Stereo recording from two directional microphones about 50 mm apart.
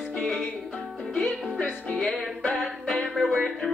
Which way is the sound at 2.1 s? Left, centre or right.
Centre.